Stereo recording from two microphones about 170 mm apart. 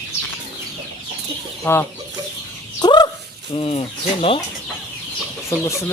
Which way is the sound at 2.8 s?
25° left (ahead or behind).